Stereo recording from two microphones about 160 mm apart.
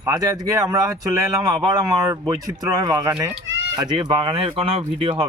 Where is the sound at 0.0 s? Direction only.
25° right (ahead or behind).